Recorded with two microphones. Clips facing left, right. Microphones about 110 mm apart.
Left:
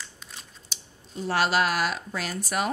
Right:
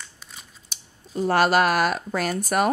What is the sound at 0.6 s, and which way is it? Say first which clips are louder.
Speech: even; 50° right (ahead or behind).